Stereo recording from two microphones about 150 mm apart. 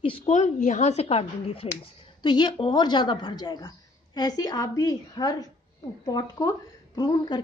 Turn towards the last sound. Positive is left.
turn(degrees=30)  # may be behind; listen again after turning